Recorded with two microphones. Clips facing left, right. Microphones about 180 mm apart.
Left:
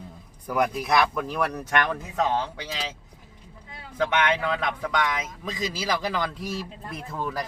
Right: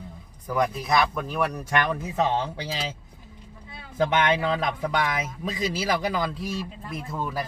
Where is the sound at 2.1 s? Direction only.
25° right (ahead or behind).